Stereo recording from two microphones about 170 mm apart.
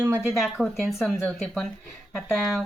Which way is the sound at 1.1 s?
10° left (ahead or behind).